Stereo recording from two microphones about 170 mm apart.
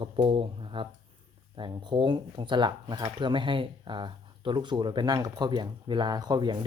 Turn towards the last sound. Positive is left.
turn(degrees=-25)  # may be behind; listen again after turning